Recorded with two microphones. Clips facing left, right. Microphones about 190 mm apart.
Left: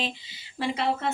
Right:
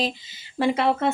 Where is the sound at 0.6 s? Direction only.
55° right (ahead or behind).